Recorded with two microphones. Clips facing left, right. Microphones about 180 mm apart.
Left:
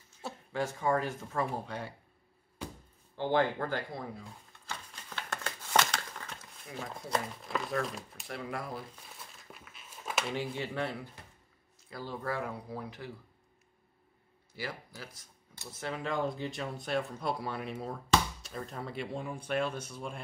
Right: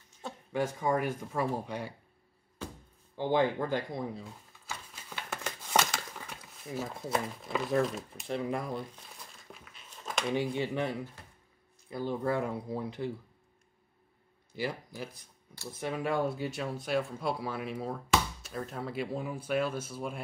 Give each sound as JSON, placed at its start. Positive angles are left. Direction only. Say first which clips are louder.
{"t": 0.5, "sound": "speech", "louder": "right 1 dB", "side_deg": -15}
{"t": 3.2, "sound": "speech", "louder": "right 1 dB", "side_deg": -15}
{"t": 4.2, "sound": "a sound", "louder": "right 3 dB", "side_deg": -5}
{"t": 7.8, "sound": "speech", "louder": "right 6 dB", "side_deg": 0}
{"t": 8.3, "sound": "speech", "louder": "right 6 dB", "side_deg": -20}
{"t": 8.7, "sound": "crumpling", "louder": "right 4 dB", "side_deg": 0}
{"t": 10.3, "sound": "speech", "louder": "right 4 dB", "side_deg": -15}
{"t": 14.5, "sound": "speech", "louder": "right 5 dB", "side_deg": -15}